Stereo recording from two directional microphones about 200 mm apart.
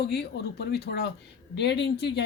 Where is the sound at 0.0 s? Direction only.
55° left (ahead or behind).